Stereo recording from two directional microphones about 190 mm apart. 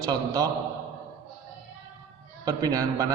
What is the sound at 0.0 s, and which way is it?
Speech, 20° right (ahead or behind).